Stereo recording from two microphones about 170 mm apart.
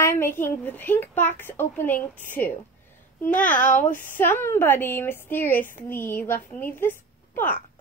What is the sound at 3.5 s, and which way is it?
Speech, 50° left (ahead or behind).